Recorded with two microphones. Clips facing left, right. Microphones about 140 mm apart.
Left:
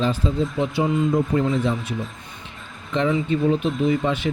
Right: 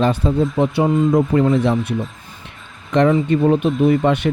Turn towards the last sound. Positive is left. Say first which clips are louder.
# right 6 dB
turn(degrees=-65)  # may be behind; listen again after turning